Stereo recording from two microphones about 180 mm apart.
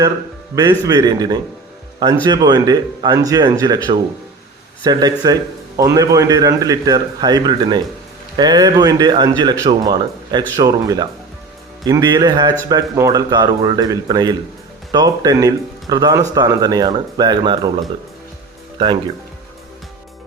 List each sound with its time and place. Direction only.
0.5 s a man's voice: 20° right (ahead or behind)
4.8 s a man's voice: 20° right (ahead or behind)